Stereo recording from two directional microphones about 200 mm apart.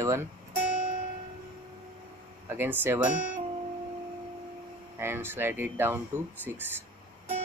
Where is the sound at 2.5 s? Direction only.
10° right (ahead or behind).